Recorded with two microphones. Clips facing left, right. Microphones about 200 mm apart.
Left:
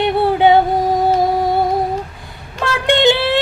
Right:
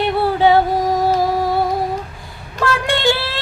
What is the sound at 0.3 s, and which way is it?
Music, 20° left (ahead or behind).